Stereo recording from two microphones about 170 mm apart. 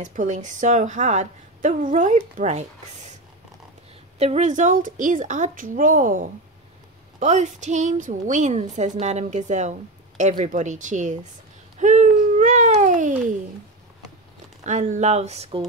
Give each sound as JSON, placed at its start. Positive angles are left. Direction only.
{"t": 0.0, "sound": "a woman's voice", "side_deg": -50}
{"t": 4.2, "sound": "a woman's voice", "side_deg": -40}
{"t": 11.8, "sound": "a sound", "side_deg": -45}
{"t": 14.6, "sound": "speech", "side_deg": -45}